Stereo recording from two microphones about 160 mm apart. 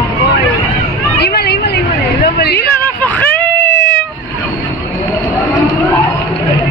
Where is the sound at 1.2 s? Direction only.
85° left.